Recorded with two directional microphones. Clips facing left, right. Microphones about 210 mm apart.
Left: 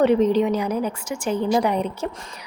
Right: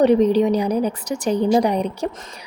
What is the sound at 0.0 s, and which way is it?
Speech, 15° right (ahead or behind).